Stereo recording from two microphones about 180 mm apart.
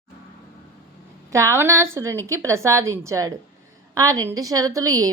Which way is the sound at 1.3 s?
15° right (ahead or behind).